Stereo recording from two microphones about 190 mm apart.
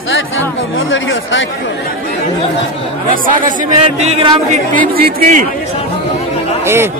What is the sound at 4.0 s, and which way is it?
Speech, 30° right (ahead or behind).